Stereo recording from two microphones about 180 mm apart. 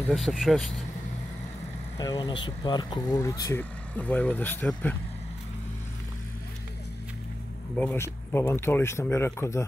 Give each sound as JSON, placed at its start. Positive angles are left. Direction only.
{"t": 0.1, "sound": "speech", "side_deg": 0}
{"t": 2.0, "sound": "speech", "side_deg": 25}
{"t": 7.7, "sound": "speech", "side_deg": 10}